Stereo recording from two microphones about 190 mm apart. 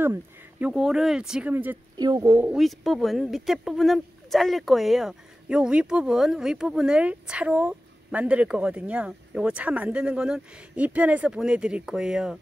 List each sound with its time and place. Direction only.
0.0 s speech: 10° right (ahead or behind)
2.0 s speech: 20° right (ahead or behind)
2.5 s speech: centre (ahead or behind)